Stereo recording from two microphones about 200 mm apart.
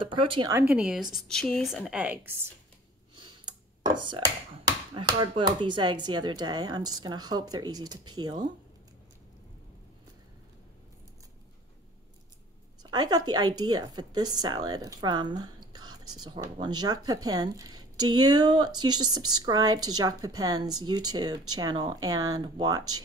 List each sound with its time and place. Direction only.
0.0 s speech: 25° right (ahead or behind)
0.5 s a woman's voice: 10° right (ahead or behind)
3.2 s speech: 20° right (ahead or behind)
12.9 s speech: 20° right (ahead or behind)